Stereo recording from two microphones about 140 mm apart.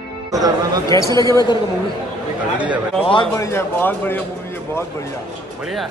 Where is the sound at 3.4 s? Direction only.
20° left (ahead or behind).